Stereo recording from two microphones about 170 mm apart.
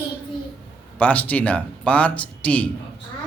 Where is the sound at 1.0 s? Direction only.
10° left (ahead or behind).